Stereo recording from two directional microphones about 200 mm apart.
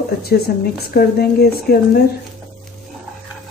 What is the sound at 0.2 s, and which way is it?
Speech, 50° left (ahead or behind).